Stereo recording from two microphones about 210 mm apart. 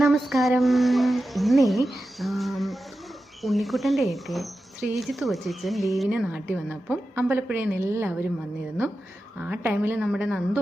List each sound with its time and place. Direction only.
0.0 s speech: centre (ahead or behind)
9.4 s a woman's voice: 5° right (ahead or behind)